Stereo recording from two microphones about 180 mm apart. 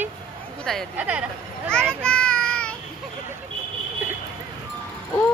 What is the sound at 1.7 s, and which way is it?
Children playing, 5° left (ahead or behind).